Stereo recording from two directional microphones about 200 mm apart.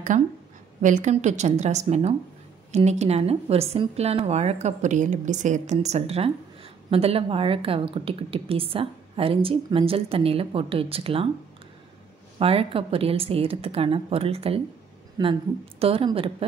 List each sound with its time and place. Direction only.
0.1 s a woman's voice: 35° right (ahead or behind)
12.4 s a woman's voice: 30° right (ahead or behind)
15.2 s a woman's voice: 20° right (ahead or behind)